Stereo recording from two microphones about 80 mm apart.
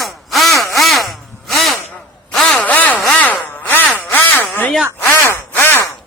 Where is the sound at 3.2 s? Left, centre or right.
Centre.